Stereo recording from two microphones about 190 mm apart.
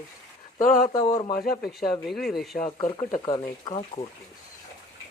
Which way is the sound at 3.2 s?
25° left (ahead or behind).